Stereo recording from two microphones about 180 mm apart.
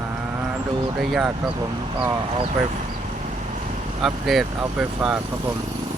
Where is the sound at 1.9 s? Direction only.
20° right (ahead or behind).